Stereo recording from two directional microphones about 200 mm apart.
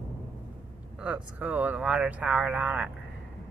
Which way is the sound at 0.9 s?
5° right (ahead or behind).